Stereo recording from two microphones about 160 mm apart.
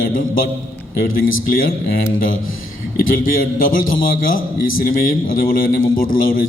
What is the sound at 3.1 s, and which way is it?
A man's voice, 60° left (ahead or behind).